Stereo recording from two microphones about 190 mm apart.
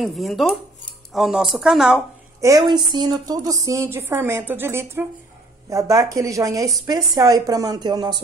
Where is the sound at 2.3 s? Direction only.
15° right (ahead or behind).